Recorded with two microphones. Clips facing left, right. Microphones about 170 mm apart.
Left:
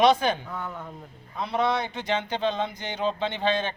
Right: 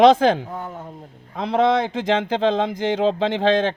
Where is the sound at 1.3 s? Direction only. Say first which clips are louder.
Right 7 dB; 90° right.